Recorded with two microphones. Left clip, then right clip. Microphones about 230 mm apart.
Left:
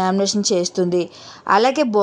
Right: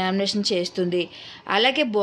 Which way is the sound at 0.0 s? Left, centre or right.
Left.